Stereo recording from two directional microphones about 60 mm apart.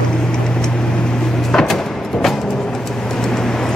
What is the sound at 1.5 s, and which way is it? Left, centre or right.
Music, centre.